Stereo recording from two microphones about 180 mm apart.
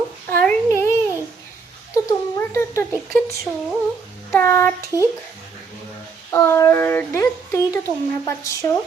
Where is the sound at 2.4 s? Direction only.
15° left (ahead or behind).